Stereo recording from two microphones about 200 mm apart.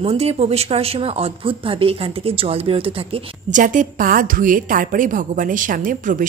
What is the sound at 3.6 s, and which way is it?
A woman's voice, 40° right (ahead or behind).